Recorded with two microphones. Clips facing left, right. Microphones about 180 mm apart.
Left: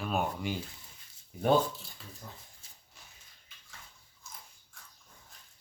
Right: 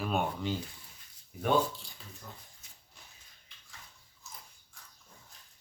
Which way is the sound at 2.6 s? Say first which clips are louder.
Even; 30° left (ahead or behind).